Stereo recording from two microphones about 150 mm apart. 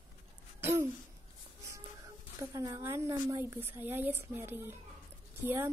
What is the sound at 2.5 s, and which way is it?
A woman's voice, 20° right (ahead or behind).